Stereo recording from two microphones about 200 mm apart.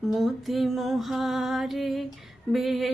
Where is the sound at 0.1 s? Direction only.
Centre (ahead or behind).